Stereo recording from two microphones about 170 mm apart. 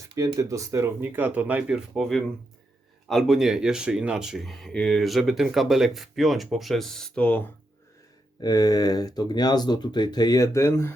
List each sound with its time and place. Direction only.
0.1 s speech: 20° right (ahead or behind); by 7.4 s 10° left (ahead or behind)
8.4 s speech: 20° left (ahead or behind)